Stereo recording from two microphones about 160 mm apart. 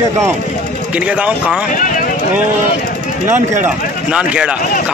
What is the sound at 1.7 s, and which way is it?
Speech, 55° left (ahead or behind).